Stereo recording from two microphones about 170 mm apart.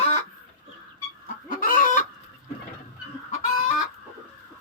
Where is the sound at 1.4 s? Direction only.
55° left (ahead or behind).